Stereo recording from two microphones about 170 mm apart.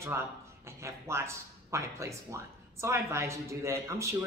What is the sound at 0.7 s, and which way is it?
Speech, 15° right (ahead or behind).